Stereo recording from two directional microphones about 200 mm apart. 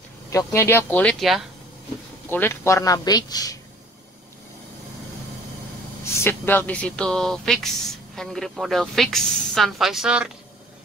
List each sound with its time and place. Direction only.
0.3 s speech: 15° left (ahead or behind)
6.0 s speech: 10° left (ahead or behind); by 10.3 s 5° right (ahead or behind)